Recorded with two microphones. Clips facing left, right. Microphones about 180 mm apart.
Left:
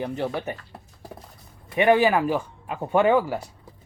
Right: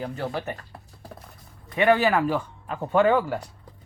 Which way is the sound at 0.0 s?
20° left (ahead or behind).